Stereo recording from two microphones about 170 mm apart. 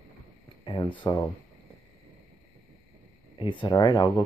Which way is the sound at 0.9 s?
30° left (ahead or behind).